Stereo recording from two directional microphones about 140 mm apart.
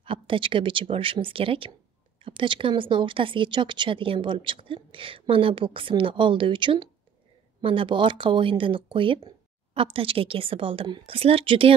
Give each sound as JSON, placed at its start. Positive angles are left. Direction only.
{"t": 0.0, "sound": "speech", "side_deg": -40}